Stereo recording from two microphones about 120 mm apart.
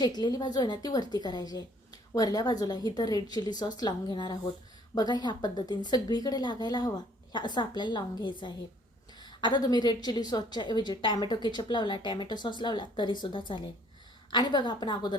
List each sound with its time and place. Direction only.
0.0 s a woman's voice: 35° left (ahead or behind)